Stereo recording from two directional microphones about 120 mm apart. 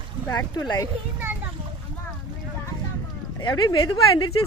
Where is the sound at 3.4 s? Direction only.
40° left (ahead or behind).